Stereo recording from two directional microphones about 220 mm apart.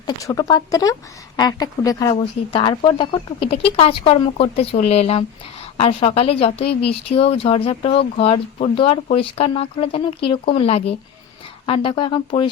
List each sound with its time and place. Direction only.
0.2 s speech: 15° left (ahead or behind)